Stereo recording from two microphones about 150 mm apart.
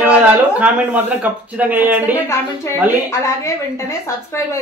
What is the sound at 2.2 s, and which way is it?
A woman's voice, 20° left (ahead or behind).